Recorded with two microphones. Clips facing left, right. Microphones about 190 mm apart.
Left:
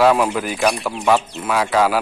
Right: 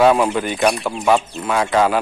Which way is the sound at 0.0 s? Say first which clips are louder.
Right 1 dB; centre (ahead or behind).